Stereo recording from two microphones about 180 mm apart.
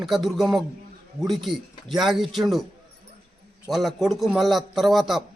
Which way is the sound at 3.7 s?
Centre (ahead or behind).